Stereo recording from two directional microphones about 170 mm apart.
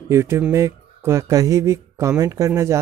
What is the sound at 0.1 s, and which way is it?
Speech, 15° right (ahead or behind).